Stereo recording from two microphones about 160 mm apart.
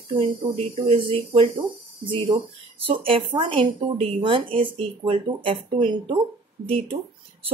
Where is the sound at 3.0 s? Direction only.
35° right (ahead or behind).